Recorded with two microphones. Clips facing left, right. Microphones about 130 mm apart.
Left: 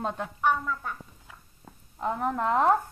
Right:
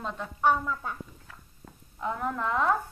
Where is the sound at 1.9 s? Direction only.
30° left (ahead or behind).